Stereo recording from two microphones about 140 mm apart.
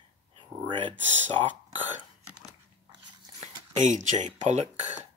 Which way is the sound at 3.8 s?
60° right (ahead or behind).